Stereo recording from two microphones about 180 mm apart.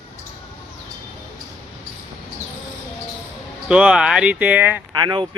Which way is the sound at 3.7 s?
5° right (ahead or behind).